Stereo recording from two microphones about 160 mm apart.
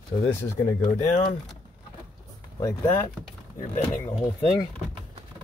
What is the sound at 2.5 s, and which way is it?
Speech, 20° left (ahead or behind).